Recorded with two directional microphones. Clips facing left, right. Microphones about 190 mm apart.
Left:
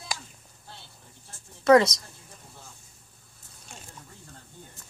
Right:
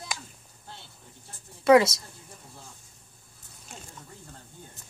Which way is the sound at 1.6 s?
5° right (ahead or behind).